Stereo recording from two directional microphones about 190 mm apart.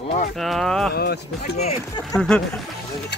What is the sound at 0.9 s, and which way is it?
Speech, 60° left (ahead or behind).